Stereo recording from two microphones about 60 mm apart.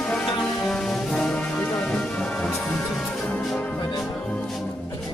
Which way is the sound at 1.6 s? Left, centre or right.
Left.